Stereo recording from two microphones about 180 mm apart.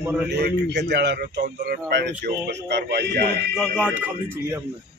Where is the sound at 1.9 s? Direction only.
70° right (ahead or behind).